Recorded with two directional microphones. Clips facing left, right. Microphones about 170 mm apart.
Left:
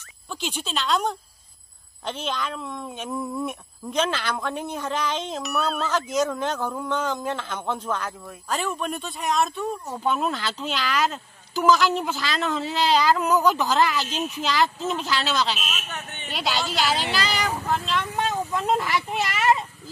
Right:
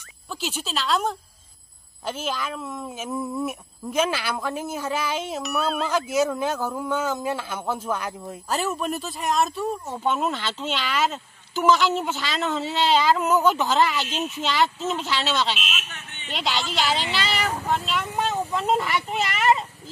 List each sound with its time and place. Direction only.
0.3 s speech: 5° right (ahead or behind)
15.6 s speech: 45° left (ahead or behind)
16.3 s speech: centre (ahead or behind)